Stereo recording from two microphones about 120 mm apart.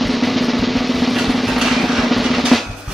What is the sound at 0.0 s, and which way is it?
Drum, centre (ahead or behind).